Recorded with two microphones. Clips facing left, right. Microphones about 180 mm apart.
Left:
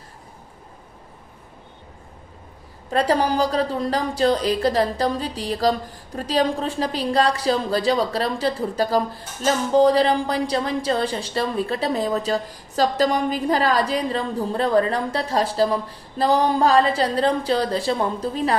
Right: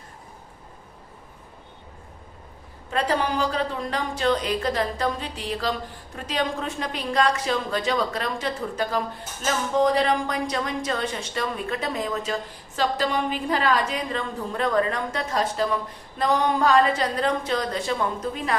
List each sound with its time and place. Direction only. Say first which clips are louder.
2.9 s speech: left 5 dB; 35° left (ahead or behind)